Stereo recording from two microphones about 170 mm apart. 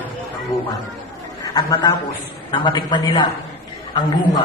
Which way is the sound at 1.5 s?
25° left (ahead or behind).